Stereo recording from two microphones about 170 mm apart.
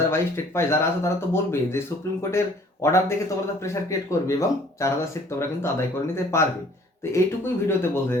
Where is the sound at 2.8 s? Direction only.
15° left (ahead or behind).